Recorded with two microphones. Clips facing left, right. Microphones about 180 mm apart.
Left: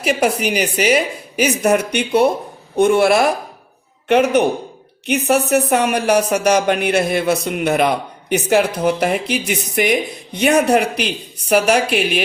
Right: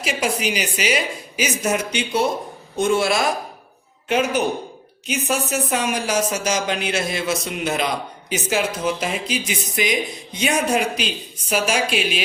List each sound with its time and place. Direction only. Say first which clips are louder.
0.0 s speech: left 6 dB; 60° left (ahead or behind)